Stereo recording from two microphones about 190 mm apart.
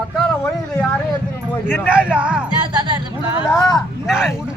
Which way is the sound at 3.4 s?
20° left (ahead or behind).